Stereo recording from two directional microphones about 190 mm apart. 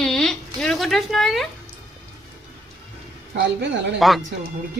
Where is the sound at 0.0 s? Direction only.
Centre (ahead or behind).